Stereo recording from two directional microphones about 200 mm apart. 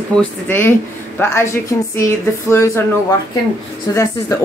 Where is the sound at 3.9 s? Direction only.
20° left (ahead or behind).